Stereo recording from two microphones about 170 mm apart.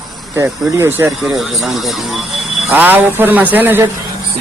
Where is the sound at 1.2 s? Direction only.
Centre (ahead or behind).